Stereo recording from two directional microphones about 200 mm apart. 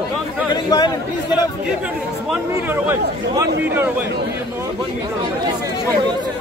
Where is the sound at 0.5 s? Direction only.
20° left (ahead or behind).